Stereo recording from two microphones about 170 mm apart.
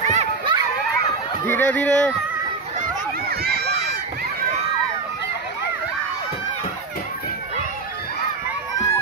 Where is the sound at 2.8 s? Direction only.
65° right (ahead or behind).